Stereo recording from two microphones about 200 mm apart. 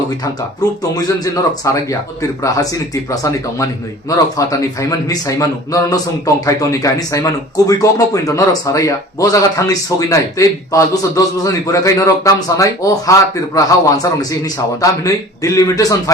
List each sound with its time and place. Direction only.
0.6 s a man's voice: 20° left (ahead or behind)
4.4 s a man's voice: 15° left (ahead or behind)